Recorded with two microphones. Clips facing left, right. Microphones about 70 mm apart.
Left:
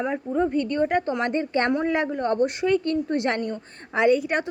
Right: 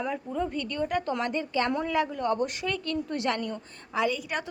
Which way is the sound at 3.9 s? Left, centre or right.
Left.